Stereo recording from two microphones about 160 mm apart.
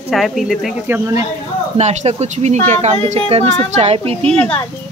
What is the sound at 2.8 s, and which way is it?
A woman's voice, 40° right (ahead or behind).